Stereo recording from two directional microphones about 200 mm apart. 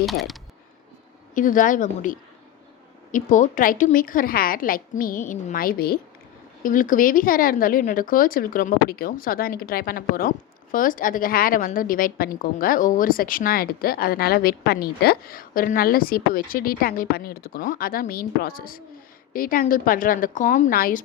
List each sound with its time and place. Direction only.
0.0 s speech: centre (ahead or behind)
1.4 s a woman's voice: 40° left (ahead or behind)